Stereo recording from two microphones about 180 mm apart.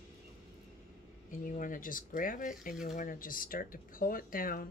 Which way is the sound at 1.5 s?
50° left (ahead or behind).